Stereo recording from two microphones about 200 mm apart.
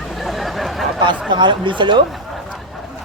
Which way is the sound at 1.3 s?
25° right (ahead or behind).